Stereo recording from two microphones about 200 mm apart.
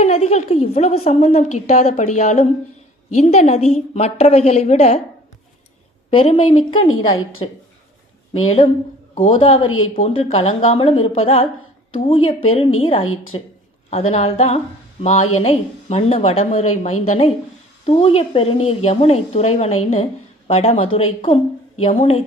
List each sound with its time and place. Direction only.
0.0 s a woman's voice: 30° left (ahead or behind)
6.1 s a woman's voice: 25° left (ahead or behind)
6.7 s speech: 90° left
7.1 s a woman's voice: 25° left (ahead or behind)
9.6 s speech: 90° left
9.9 s a woman's voice: 25° left (ahead or behind)